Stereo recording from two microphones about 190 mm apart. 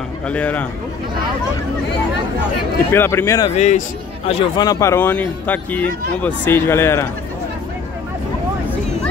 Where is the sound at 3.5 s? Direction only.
35° left (ahead or behind).